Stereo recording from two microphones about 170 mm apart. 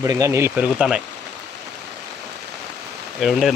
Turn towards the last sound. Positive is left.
turn(degrees=0)  # may be behind; listen again after turning